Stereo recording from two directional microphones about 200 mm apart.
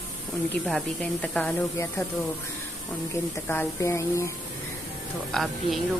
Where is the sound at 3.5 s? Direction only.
10° left (ahead or behind).